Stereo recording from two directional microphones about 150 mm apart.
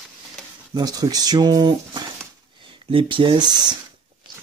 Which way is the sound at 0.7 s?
25° right (ahead or behind).